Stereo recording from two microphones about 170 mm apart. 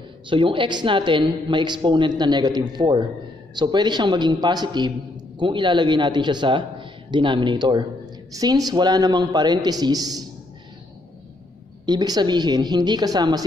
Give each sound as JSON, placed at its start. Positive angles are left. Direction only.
{"t": 0.3, "sound": "a man's voice", "side_deg": -30}
{"t": 11.8, "sound": "a man's voice", "side_deg": -25}